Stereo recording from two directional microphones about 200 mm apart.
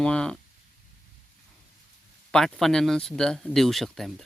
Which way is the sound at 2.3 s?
Centre (ahead or behind).